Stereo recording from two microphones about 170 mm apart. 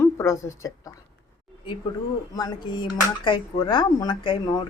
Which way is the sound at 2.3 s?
25° left (ahead or behind).